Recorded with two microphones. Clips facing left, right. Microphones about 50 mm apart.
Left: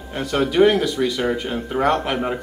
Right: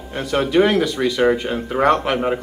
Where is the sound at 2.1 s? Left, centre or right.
Centre.